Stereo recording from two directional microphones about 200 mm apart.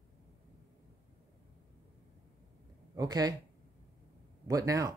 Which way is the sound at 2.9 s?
20° right (ahead or behind).